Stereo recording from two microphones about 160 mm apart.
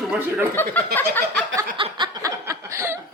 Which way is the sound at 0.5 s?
15° left (ahead or behind).